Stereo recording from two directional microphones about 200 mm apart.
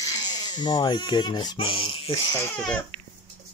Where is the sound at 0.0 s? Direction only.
20° left (ahead or behind).